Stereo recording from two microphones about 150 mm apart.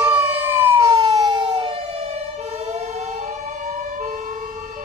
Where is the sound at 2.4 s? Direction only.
50° right (ahead or behind).